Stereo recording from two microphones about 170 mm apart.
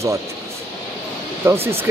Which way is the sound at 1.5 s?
15° right (ahead or behind).